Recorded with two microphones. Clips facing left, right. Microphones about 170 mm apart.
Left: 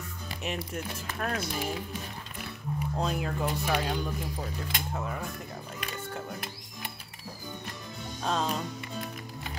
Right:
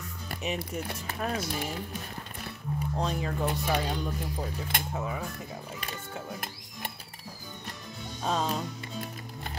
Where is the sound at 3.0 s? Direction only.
Centre (ahead or behind).